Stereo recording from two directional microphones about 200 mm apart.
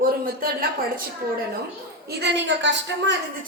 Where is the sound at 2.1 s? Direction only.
55° right (ahead or behind).